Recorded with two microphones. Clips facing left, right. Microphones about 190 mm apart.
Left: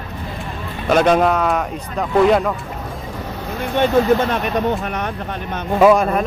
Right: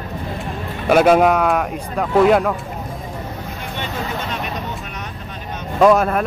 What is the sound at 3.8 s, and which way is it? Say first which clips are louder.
Speech: left 13 dB; 55° left (ahead or behind).